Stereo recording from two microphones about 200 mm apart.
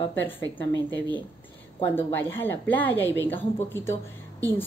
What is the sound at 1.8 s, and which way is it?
A woman's voice, 10° left (ahead or behind).